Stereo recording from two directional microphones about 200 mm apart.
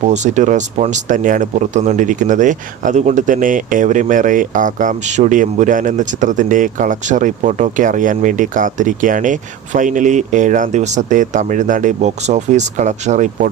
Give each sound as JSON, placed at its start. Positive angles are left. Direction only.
{"t": 0.0, "sound": "speech", "side_deg": -35}